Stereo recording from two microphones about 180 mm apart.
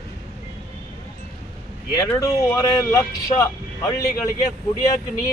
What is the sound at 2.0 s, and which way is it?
Speech, 15° left (ahead or behind).